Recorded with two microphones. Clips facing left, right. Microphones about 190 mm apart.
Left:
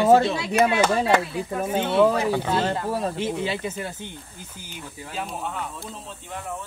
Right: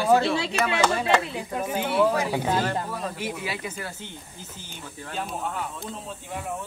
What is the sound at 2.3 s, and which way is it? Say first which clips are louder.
Speech: left 1 dB; 15° right (ahead or behind).